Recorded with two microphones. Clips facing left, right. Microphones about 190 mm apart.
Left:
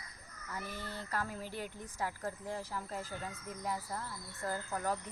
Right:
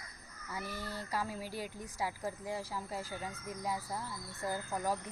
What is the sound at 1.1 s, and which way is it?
A woman's voice, 10° right (ahead or behind).